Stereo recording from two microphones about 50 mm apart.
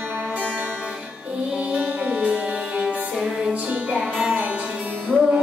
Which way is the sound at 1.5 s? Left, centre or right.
Right.